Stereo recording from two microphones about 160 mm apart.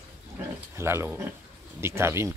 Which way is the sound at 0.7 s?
15° right (ahead or behind).